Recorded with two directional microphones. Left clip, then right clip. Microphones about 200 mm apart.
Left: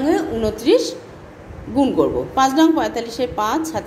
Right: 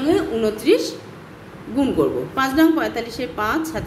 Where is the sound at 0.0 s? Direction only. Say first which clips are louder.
Even; 20° right (ahead or behind).